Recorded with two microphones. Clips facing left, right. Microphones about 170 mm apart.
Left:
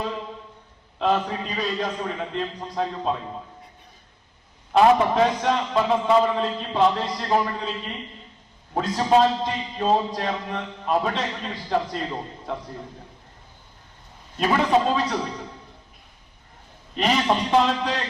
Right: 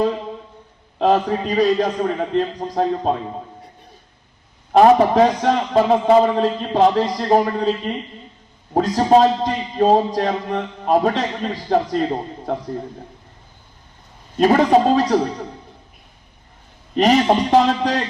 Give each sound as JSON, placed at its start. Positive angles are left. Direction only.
{"t": 0.9, "sound": "a man's voice", "side_deg": -40}
{"t": 4.7, "sound": "a man's voice", "side_deg": -40}
{"t": 14.3, "sound": "a man's voice", "side_deg": -40}
{"t": 16.9, "sound": "a man's voice", "side_deg": -40}